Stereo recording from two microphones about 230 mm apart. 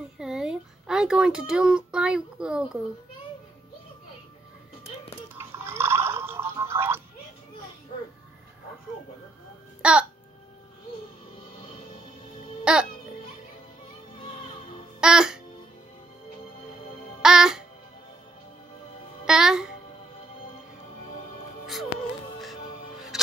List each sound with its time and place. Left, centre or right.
0.2 s a child's voice: centre
5.3 s music: centre
9.8 s music: centre
12.7 s a child's voice: centre
15.0 s a child's voice: centre
17.2 s music: centre
19.2 s a child's voice: centre
23.1 s music: centre